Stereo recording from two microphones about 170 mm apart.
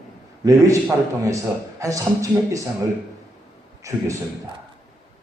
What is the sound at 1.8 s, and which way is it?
Speech, 20° right (ahead or behind).